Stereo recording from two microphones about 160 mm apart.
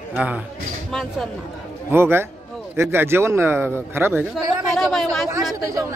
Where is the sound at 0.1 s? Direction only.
10° right (ahead or behind).